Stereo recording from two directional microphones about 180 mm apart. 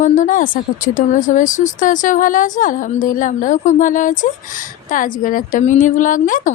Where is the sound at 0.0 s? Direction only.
45° left (ahead or behind).